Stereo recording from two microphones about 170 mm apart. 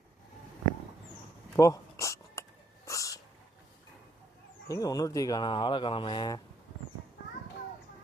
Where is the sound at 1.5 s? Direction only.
20° left (ahead or behind).